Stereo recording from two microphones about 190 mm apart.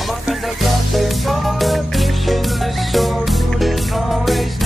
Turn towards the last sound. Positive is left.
turn(degrees=0)  # may be behind; listen again after turning